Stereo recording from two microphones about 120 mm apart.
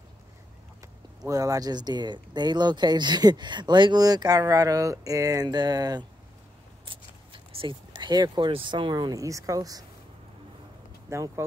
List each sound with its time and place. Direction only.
1.2 s speech: 30° right (ahead or behind)
6.9 s a sound: 45° right (ahead or behind)
7.9 s speech: 35° right (ahead or behind)
9.1 s speech: 25° right (ahead or behind)
11.1 s speech: 25° right (ahead or behind)